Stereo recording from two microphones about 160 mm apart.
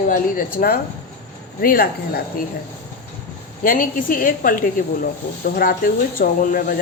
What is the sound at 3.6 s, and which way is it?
A woman's voice, 60° left (ahead or behind).